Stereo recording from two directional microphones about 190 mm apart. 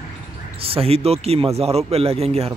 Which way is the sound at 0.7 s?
30° right (ahead or behind).